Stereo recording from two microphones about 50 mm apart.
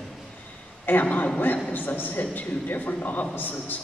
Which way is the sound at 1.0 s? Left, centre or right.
Left.